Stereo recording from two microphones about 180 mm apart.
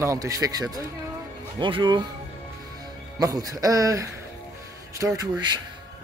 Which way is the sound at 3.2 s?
20° right (ahead or behind).